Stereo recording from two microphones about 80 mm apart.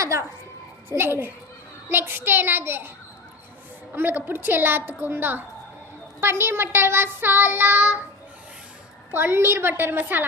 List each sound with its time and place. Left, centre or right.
0.0 s music: right
0.9 s child singing: right
3.9 s child singing: right
9.1 s child singing: right